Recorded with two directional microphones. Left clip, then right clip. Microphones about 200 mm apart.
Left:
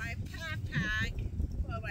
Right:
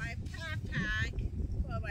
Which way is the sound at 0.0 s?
10° left (ahead or behind).